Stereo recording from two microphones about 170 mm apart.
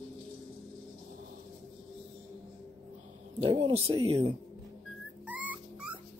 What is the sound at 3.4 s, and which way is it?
Speech, 35° right (ahead or behind).